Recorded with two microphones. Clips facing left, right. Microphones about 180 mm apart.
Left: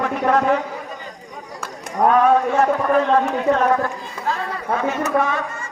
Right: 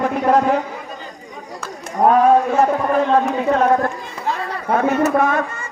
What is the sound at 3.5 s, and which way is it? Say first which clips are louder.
Speech: right 2 dB; 35° right (ahead or behind).